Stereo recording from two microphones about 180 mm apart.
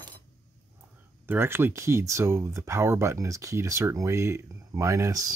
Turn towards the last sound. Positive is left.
turn(degrees=-20)  # may be behind; listen again after turning